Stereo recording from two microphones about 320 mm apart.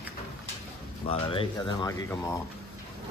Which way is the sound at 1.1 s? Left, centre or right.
Centre.